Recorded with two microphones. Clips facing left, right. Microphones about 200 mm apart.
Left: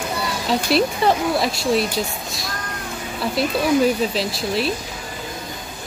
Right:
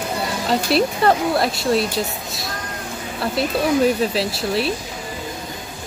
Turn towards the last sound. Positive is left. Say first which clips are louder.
# right 1 dB
turn(degrees=0)  # may be behind; listen again after turning